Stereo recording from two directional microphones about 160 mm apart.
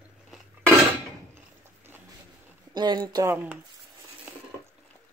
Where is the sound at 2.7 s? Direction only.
25° right (ahead or behind).